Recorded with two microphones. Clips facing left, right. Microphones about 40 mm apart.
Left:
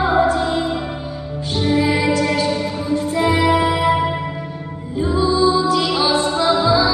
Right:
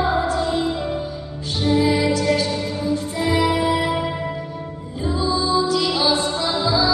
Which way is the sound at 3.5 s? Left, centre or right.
Left.